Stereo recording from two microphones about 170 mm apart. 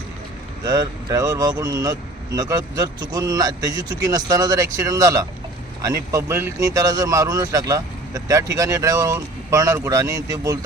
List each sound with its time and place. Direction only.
0.6 s speech: 25° right (ahead or behind)